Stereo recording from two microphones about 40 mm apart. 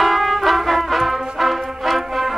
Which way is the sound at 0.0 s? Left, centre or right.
Centre.